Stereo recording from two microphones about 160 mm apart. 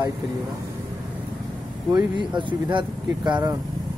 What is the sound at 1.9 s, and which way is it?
Speech, 30° right (ahead or behind).